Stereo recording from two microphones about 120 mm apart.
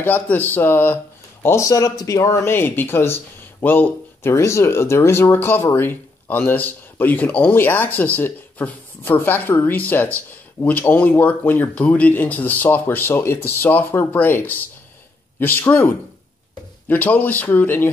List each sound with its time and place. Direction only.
0.0 s speech: 15° left (ahead or behind)